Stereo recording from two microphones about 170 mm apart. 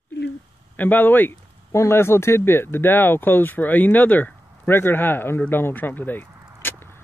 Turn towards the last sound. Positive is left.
turn(degrees=15)  # may be behind; listen again after turning